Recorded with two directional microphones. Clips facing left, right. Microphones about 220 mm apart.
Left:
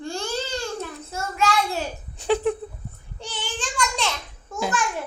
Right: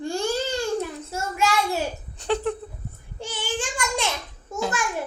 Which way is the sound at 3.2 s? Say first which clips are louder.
Right 3 dB; 10° right (ahead or behind).